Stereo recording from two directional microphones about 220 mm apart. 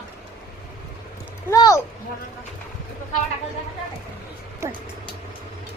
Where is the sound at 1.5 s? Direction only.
15° left (ahead or behind).